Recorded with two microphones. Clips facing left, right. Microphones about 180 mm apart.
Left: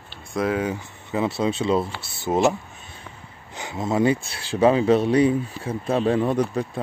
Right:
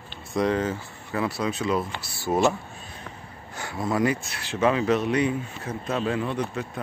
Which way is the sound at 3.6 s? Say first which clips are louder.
Left 2 dB; 20° left (ahead or behind).